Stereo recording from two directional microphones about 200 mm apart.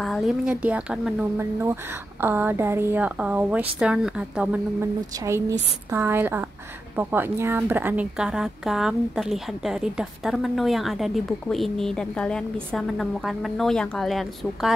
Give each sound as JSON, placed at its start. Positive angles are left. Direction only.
{"t": 0.0, "sound": "a woman's voice", "side_deg": 0}
{"t": 5.2, "sound": "a woman's voice", "side_deg": -15}